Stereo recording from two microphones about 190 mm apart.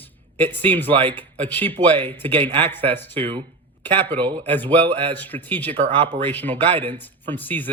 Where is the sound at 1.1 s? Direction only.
10° left (ahead or behind).